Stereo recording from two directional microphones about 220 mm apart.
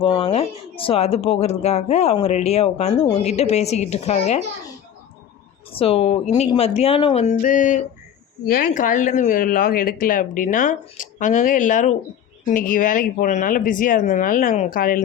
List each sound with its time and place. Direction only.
0.0 s speech: 25° left (ahead or behind)
5.7 s speech: 25° left (ahead or behind)